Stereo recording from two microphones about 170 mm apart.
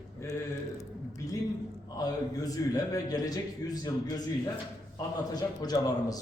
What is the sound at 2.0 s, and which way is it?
A man's voice, 20° left (ahead or behind).